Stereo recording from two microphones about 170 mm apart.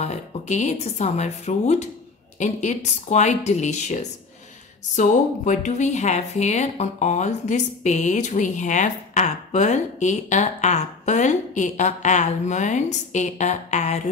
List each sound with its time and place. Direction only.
0.0 s a woman's voice: 40° left (ahead or behind)